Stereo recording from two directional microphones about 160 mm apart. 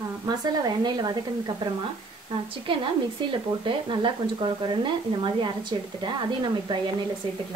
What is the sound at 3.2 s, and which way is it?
Speech, 30° right (ahead or behind).